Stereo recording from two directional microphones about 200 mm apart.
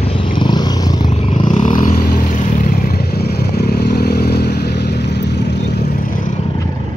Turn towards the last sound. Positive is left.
turn(degrees=55)  # may be behind; listen again after turning